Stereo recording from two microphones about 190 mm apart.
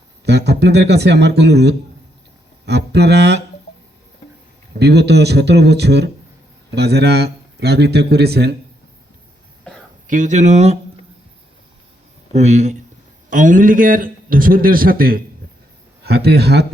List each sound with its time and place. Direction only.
0.3 s a man's voice: 60° right (ahead or behind)
4.8 s a man's voice: 60° right (ahead or behind)
10.1 s speech: 40° right (ahead or behind)
12.3 s a man's voice: 35° right (ahead or behind); by 16.6 s 60° right (ahead or behind)